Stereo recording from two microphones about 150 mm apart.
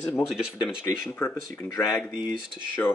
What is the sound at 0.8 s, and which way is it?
Speech, 15° left (ahead or behind).